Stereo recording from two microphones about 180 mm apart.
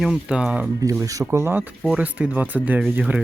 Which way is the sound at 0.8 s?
20° right (ahead or behind).